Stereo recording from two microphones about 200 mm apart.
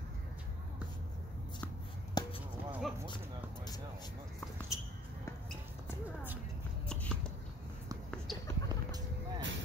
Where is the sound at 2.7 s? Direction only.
Centre (ahead or behind).